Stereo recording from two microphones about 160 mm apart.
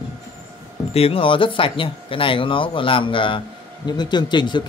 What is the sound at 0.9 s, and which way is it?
Speech, 35° left (ahead or behind).